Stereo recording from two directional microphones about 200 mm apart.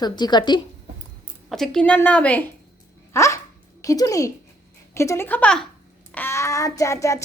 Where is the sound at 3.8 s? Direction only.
15° left (ahead or behind).